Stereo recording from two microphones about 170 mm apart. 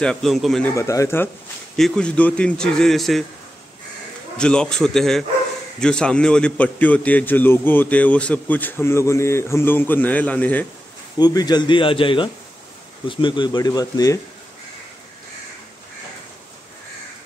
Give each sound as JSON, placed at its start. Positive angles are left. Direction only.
{"t": 0.0, "sound": "a man's voice", "side_deg": 5}
{"t": 0.7, "sound": "a man's voice", "side_deg": 20}
{"t": 4.4, "sound": "a man's voice", "side_deg": 5}
{"t": 11.1, "sound": "speech", "side_deg": 25}